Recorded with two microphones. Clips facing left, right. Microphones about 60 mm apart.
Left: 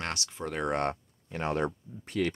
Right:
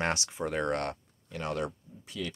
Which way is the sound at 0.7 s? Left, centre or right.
Left.